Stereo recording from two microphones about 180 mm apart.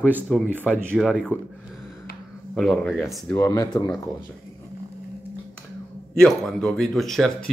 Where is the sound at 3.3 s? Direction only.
15° left (ahead or behind).